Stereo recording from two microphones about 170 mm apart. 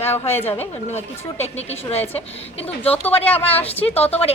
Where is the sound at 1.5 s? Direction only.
35° left (ahead or behind).